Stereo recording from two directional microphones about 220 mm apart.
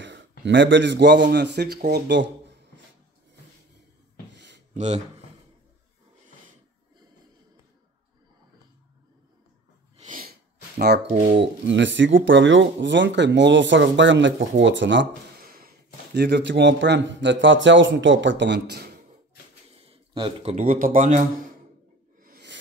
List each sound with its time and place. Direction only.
0.5 s speech: 55° right (ahead or behind)
4.7 s speech: 30° right (ahead or behind)
9.9 s sneeze: 35° right (ahead or behind)
11.1 s speech: 30° right (ahead or behind)
11.6 s speech: 55° right (ahead or behind)
16.2 s speech: 50° right (ahead or behind)
19.8 s a man's voice: 25° right (ahead or behind)
22.2 s a sound: 45° right (ahead or behind)